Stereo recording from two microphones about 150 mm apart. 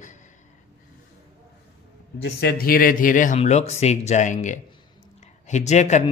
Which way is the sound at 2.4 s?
80° left.